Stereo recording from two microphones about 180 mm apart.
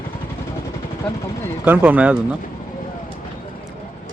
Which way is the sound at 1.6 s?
10° right (ahead or behind).